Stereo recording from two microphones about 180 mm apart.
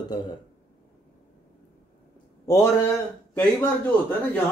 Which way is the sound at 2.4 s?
15° left (ahead or behind).